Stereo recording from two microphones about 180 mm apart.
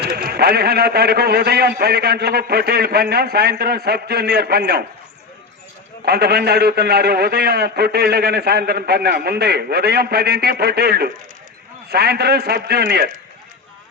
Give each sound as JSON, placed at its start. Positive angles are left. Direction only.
{"t": 0.0, "sound": "a man's voice", "side_deg": -55}
{"t": 6.1, "sound": "a man's voice", "side_deg": -60}